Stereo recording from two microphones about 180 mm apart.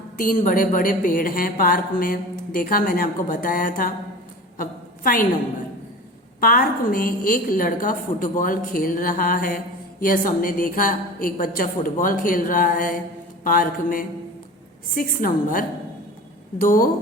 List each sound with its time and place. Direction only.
0.2 s a woman's voice: 50° left (ahead or behind)
4.5 s a sound: 50° left (ahead or behind)
6.4 s a woman's voice: 50° left (ahead or behind)